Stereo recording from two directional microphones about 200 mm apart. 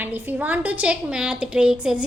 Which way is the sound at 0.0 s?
10° right (ahead or behind).